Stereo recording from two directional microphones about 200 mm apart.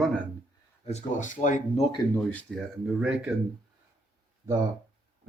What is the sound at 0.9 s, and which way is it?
Speech, 35° left (ahead or behind).